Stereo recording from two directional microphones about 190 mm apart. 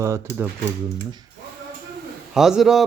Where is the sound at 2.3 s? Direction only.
Centre (ahead or behind).